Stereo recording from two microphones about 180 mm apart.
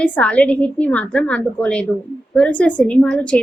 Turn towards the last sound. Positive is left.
turn(degrees=5)  # may be behind; listen again after turning